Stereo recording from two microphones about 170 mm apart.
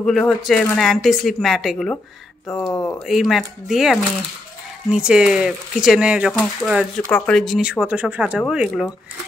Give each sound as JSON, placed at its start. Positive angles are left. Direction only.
{"t": 0.0, "sound": "speech", "side_deg": 0}
{"t": 2.7, "sound": "speech", "side_deg": 20}
{"t": 3.1, "sound": "speech", "side_deg": 0}